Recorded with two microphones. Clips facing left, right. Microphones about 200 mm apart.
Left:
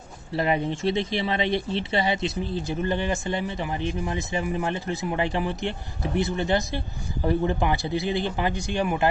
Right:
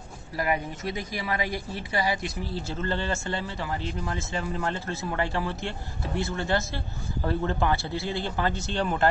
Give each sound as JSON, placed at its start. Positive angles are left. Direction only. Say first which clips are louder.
{"t": 0.4, "sound": "speech", "louder": "left 4 dB", "side_deg": 25}